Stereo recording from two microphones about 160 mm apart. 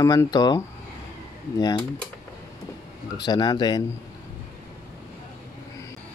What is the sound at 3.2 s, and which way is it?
Speech, 25° left (ahead or behind).